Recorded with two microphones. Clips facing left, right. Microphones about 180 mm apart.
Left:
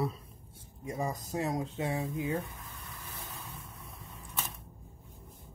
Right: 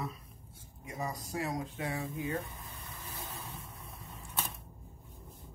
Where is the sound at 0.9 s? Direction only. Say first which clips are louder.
Left 4 dB; 30° left (ahead or behind).